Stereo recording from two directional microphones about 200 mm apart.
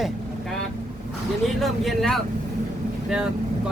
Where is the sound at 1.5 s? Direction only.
Centre (ahead or behind).